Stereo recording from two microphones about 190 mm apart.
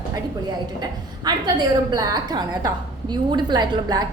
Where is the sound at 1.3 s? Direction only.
20° right (ahead or behind).